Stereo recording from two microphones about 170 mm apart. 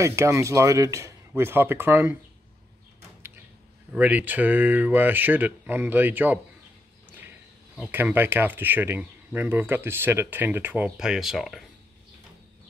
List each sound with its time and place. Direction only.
0.0 s speech: 15° right (ahead or behind)
3.9 s speech: 10° right (ahead or behind)